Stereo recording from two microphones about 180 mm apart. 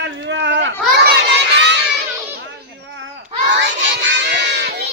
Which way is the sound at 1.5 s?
75° right (ahead or behind).